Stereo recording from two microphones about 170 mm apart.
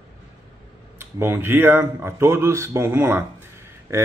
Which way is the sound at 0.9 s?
15° right (ahead or behind).